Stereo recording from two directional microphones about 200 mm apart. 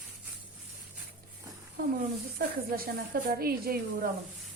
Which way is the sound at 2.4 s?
50° right (ahead or behind).